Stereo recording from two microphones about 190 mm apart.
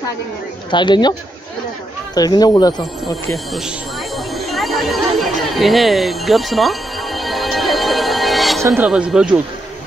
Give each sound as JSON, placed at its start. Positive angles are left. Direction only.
{"t": 0.7, "sound": "speech", "side_deg": 25}
{"t": 2.1, "sound": "speech", "side_deg": 20}
{"t": 4.3, "sound": "chatter", "side_deg": 0}
{"t": 8.6, "sound": "speech", "side_deg": -10}